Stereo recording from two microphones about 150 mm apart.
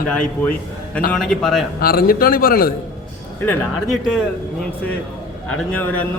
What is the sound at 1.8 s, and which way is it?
Speech, 80° left.